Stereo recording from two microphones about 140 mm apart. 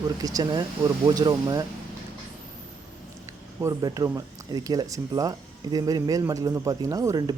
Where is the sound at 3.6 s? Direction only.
25° right (ahead or behind).